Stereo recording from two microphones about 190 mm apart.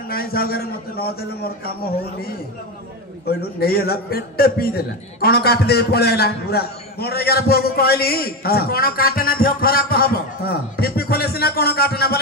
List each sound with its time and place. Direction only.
0.1 s a man's voice: 50° left (ahead or behind)
3.3 s a man's voice: 55° left (ahead or behind)